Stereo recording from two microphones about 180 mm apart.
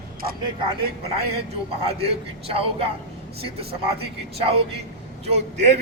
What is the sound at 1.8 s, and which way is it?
A man's voice, 35° right (ahead or behind).